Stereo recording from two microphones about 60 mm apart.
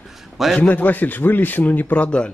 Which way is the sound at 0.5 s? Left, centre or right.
Left.